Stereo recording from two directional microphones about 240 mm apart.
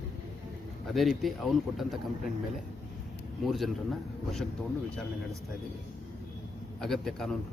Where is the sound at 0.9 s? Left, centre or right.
Centre.